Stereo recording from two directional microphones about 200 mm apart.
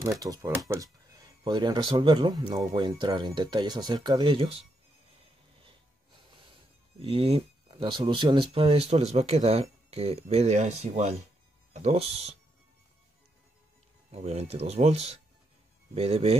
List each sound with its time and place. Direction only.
0.0 s speech: 15° right (ahead or behind)
6.3 s speech: 25° right (ahead or behind)
14.1 s speech: 30° right (ahead or behind)